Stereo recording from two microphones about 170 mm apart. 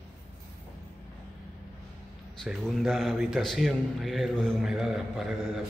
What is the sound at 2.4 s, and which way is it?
A man's voice, centre (ahead or behind).